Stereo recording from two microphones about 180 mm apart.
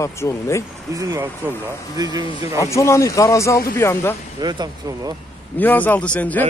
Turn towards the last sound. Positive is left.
turn(degrees=10)  # may be behind; listen again after turning